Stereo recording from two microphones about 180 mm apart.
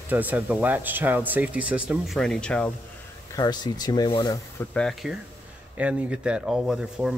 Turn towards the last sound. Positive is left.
turn(degrees=-5)  # may be behind; listen again after turning